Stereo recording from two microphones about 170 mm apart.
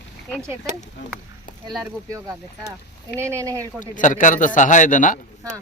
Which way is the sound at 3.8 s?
50° left (ahead or behind).